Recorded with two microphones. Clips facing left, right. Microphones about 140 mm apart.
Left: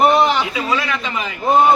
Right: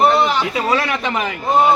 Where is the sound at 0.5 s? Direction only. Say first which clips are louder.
Right 2 dB; 50° right (ahead or behind).